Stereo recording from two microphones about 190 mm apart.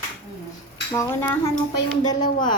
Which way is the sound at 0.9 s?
15° left (ahead or behind).